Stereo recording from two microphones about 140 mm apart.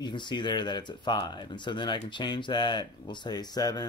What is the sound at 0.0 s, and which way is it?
Speech, 35° left (ahead or behind).